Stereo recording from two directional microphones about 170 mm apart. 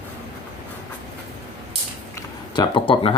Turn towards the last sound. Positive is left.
turn(degrees=30)  # may be behind; listen again after turning